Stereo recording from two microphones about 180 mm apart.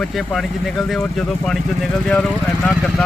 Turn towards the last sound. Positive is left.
turn(degrees=5)  # may be behind; listen again after turning